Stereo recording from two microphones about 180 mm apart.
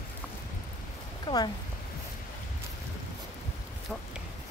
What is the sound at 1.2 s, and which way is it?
Speech, 25° left (ahead or behind).